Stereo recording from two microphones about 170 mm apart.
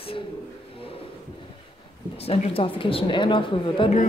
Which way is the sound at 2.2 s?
35° left (ahead or behind).